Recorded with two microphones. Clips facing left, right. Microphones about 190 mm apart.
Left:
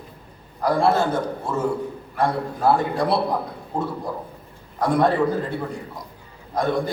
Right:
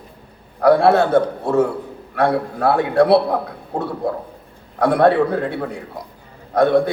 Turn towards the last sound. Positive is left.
turn(degrees=-65)  # may be behind; listen again after turning